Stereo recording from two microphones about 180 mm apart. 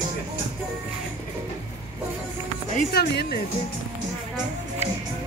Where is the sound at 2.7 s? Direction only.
60° left (ahead or behind).